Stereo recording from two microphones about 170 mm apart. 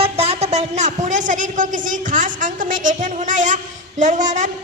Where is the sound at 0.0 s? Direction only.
35° right (ahead or behind).